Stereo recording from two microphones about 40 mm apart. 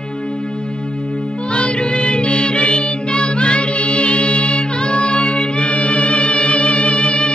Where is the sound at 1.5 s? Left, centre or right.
Left.